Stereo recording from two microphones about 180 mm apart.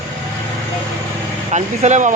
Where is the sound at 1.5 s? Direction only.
40° right (ahead or behind).